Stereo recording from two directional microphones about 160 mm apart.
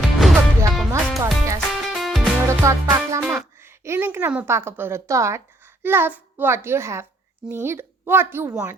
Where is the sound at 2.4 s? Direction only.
20° right (ahead or behind).